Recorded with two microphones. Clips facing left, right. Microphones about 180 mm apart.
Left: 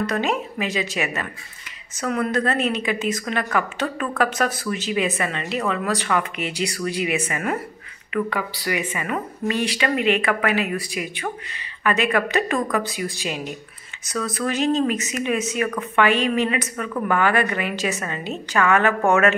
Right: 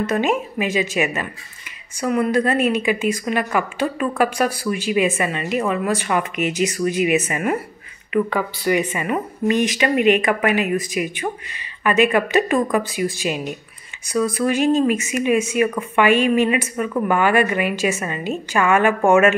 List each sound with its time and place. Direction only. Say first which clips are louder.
0.1 s a woman's voice: right 4 dB; 15° right (ahead or behind)
8.7 s speech: right 3 dB; 20° right (ahead or behind)